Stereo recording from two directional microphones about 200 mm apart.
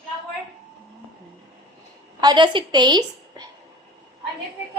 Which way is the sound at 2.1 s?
20° right (ahead or behind).